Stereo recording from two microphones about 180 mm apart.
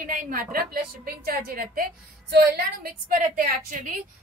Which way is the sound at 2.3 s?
65° right (ahead or behind).